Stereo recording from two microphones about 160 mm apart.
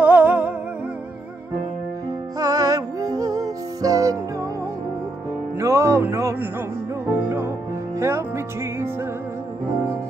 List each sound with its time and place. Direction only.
0.0 s music: 10° right (ahead or behind)
2.3 s music: 20° right (ahead or behind)
5.6 s music: 20° right (ahead or behind)